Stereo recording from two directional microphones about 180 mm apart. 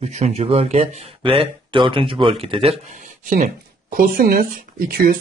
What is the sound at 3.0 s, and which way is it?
Speech, 45° right (ahead or behind).